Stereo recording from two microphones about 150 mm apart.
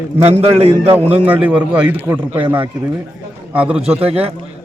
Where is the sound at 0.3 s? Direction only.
40° right (ahead or behind).